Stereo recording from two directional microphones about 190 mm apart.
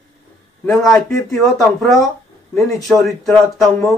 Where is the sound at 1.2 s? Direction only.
Centre (ahead or behind).